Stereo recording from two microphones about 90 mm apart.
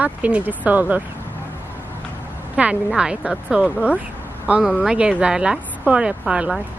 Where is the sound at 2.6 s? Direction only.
10° right (ahead or behind).